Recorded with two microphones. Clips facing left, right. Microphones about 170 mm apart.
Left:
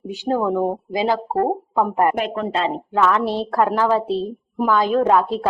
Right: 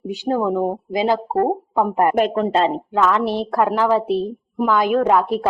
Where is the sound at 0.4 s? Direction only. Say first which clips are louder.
Even; 10° right (ahead or behind).